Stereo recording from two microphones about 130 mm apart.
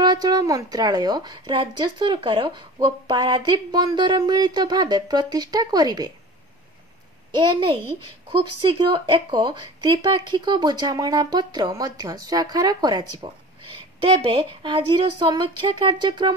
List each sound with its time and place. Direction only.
0.0 s speech: 30° right (ahead or behind)
8.0 s speech: 40° right (ahead or behind)
14.0 s speech: 45° right (ahead or behind)